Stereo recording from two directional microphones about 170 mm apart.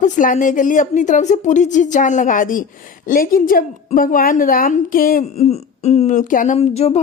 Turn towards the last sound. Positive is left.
turn(degrees=40)  # may be behind; listen again after turning